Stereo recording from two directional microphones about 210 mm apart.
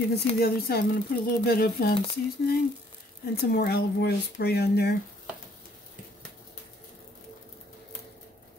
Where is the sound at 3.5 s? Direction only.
50° left (ahead or behind).